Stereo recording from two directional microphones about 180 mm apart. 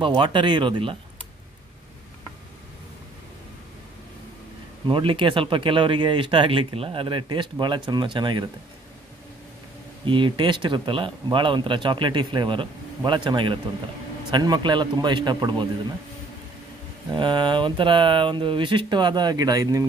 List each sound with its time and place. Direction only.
0.0 s speech: 25° right (ahead or behind)
4.8 s speech: 30° right (ahead or behind)
10.0 s speech: 25° right (ahead or behind)
17.1 s speech: 25° right (ahead or behind)